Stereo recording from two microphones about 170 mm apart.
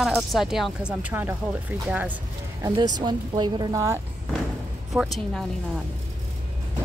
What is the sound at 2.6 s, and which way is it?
A woman's voice, 25° right (ahead or behind).